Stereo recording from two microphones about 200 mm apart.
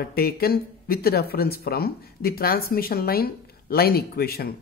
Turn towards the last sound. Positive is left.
turn(degrees=50)  # may be behind; listen again after turning